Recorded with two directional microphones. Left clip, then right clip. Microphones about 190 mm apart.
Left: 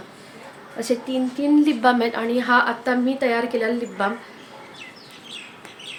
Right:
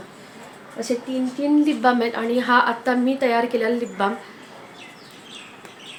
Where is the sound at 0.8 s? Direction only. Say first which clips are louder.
Left 1 dB; 15° left (ahead or behind); by 4.1 s 5° right (ahead or behind).